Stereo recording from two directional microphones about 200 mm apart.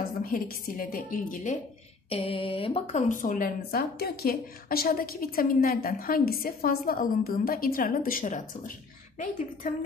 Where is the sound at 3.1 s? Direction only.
40° left (ahead or behind).